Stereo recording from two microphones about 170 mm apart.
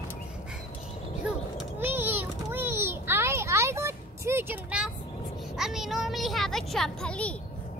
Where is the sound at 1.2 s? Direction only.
10° right (ahead or behind).